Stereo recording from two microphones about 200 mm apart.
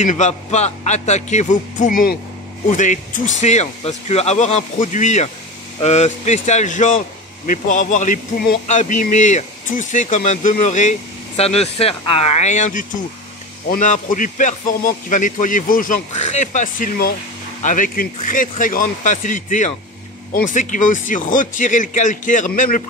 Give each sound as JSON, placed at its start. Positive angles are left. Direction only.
{"t": 0.0, "sound": "speech", "side_deg": 35}